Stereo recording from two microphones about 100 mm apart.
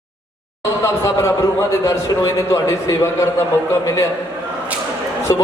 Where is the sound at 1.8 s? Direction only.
30° left (ahead or behind).